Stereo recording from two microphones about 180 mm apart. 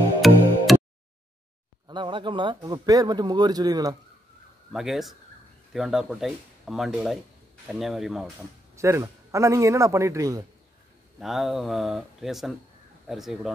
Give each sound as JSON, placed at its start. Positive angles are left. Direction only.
{"t": 0.2, "sound": "music", "side_deg": 0}
{"t": 0.7, "sound": "a sound", "side_deg": 0}
{"t": 1.9, "sound": "speech", "side_deg": -25}
{"t": 4.7, "sound": "speech", "side_deg": 0}
{"t": 8.7, "sound": "a man's voice", "side_deg": -15}
{"t": 11.1, "sound": "speech", "side_deg": 0}